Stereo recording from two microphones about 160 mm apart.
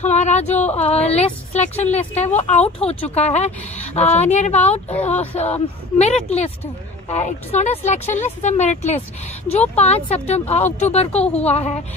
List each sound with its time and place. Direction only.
0.0 s a woman's voice: 45° left (ahead or behind)